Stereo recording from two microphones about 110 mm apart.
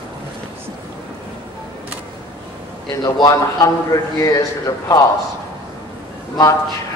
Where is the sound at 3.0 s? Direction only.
35° left (ahead or behind).